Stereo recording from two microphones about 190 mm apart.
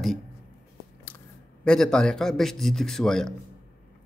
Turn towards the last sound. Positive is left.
turn(degrees=0)  # may be behind; listen again after turning